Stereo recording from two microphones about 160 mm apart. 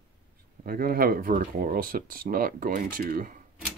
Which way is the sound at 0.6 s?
65° right (ahead or behind).